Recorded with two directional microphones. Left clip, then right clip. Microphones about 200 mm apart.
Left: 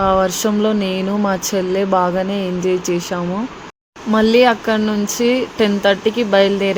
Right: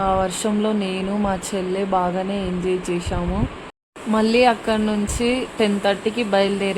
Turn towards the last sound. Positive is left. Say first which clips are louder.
# left 5 dB
turn(degrees=15)  # may be behind; listen again after turning